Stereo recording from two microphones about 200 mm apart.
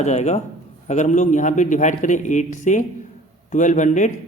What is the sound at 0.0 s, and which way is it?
A man's voice, 35° left (ahead or behind).